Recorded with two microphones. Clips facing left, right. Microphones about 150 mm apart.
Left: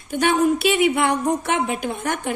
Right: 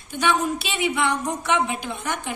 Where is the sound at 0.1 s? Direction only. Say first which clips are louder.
Left 5 dB; 50° left (ahead or behind).